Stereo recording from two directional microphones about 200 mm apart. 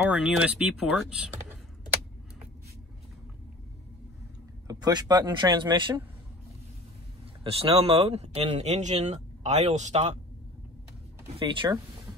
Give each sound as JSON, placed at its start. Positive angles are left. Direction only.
{"t": 0.1, "sound": "speech", "side_deg": -5}
{"t": 4.6, "sound": "speech", "side_deg": -20}
{"t": 7.4, "sound": "speech", "side_deg": -30}
{"t": 11.2, "sound": "speech", "side_deg": -25}